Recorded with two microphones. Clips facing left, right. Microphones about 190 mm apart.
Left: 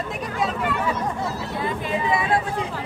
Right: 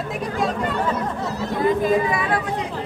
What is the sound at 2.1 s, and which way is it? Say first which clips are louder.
Speech: left 1 dB; 25° left (ahead or behind).